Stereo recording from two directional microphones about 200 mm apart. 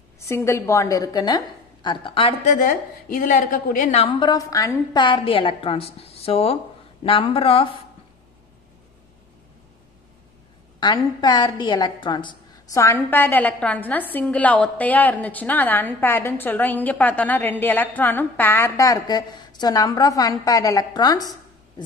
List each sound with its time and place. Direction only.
0.3 s a woman's voice: 15° left (ahead or behind)
2.6 s a woman's voice: 45° left (ahead or behind); by 7.6 s 30° left (ahead or behind)
10.8 s a woman's voice: 20° left (ahead or behind)